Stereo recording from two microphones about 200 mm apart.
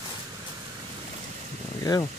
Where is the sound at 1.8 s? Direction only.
20° left (ahead or behind).